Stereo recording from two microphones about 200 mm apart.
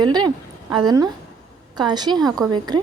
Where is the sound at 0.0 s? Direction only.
20° right (ahead or behind).